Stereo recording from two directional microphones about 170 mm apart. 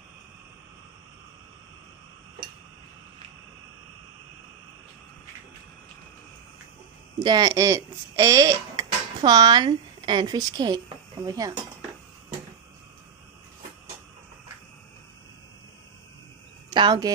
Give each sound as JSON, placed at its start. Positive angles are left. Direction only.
{"t": 7.2, "sound": "a woman's voice", "side_deg": -25}
{"t": 16.7, "sound": "speech", "side_deg": -25}